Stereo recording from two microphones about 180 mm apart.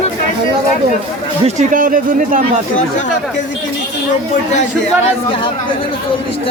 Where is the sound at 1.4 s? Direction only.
50° right (ahead or behind).